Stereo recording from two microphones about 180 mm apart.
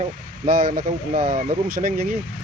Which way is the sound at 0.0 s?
50° right (ahead or behind).